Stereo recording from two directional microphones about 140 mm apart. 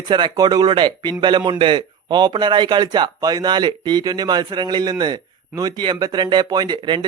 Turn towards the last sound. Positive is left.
turn(degrees=-30)  # may be behind; listen again after turning